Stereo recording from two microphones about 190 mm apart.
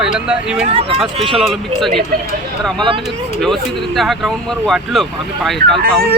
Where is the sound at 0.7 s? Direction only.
30° right (ahead or behind).